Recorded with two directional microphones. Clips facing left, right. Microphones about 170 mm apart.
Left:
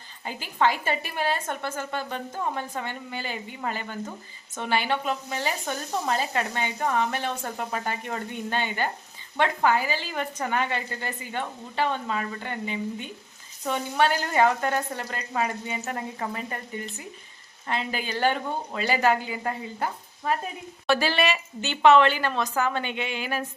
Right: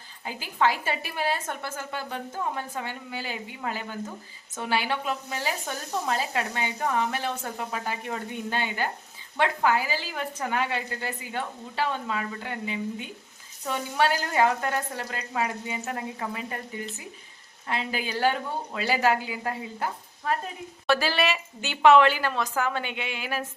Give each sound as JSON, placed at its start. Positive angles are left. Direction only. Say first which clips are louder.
{"t": 0.3, "sound": "a woman's voice", "louder": "left 1 dB", "side_deg": -5}